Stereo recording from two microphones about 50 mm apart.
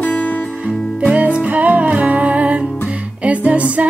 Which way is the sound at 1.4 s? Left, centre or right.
Right.